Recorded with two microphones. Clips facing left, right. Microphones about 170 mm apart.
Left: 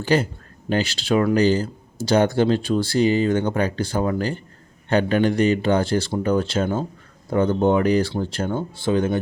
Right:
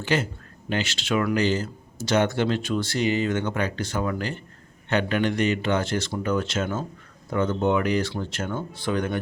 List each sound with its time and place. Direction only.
0.0 s speech: 35° left (ahead or behind)